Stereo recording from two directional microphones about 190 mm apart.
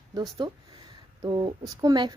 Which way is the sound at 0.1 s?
20° right (ahead or behind).